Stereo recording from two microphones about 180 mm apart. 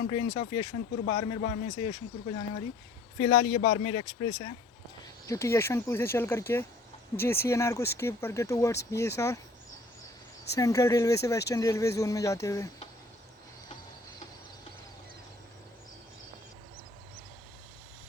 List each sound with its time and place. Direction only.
0.0 s speech: 25° left (ahead or behind)
3.2 s speech: 25° left (ahead or behind)
10.5 s speech: 15° left (ahead or behind)